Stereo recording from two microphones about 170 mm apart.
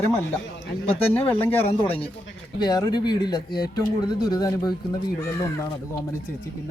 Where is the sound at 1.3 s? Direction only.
10° left (ahead or behind).